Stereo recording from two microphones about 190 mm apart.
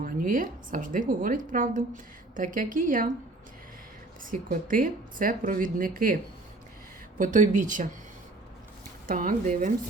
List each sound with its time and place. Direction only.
0.0 s speech: 45° right (ahead or behind)
4.2 s speech: 45° right (ahead or behind)
7.2 s speech: 45° right (ahead or behind)
9.0 s speech: 45° right (ahead or behind)